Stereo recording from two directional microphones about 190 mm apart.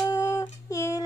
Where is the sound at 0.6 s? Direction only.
15° left (ahead or behind).